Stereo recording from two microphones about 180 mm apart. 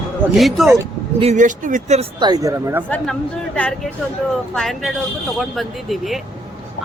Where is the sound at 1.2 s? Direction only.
40° right (ahead or behind).